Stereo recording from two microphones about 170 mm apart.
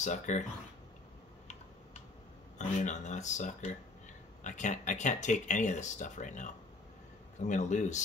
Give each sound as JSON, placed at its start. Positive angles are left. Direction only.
{"t": 0.0, "sound": "speech", "side_deg": 45}
{"t": 2.6, "sound": "speech", "side_deg": 45}